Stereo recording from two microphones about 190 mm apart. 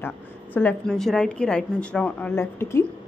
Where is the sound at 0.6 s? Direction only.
5° left (ahead or behind).